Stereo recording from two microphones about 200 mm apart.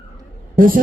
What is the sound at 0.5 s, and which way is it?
Speech, 45° right (ahead or behind).